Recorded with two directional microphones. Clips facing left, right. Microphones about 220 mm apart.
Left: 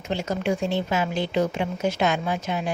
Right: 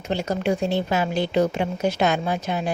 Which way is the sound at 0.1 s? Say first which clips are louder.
Right 2 dB; 35° right (ahead or behind).